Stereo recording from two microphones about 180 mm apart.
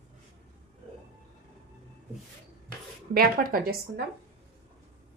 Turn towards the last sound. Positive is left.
turn(degrees=-60)  # may be behind; listen again after turning